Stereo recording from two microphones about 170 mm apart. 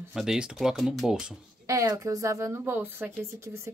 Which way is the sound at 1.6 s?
20° right (ahead or behind).